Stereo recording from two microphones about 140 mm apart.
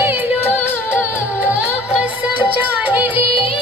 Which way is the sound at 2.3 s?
10° right (ahead or behind).